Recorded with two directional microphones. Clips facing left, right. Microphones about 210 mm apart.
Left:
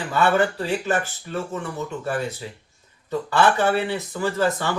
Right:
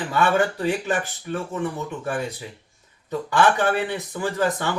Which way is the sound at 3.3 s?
15° right (ahead or behind).